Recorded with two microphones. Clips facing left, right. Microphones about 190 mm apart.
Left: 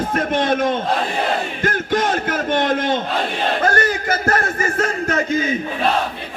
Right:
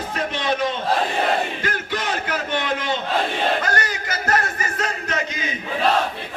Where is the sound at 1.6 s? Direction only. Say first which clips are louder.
Left 7 dB; 50° left (ahead or behind).